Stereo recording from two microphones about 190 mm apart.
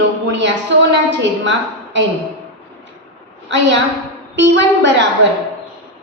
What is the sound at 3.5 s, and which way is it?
A woman's voice, 70° right (ahead or behind).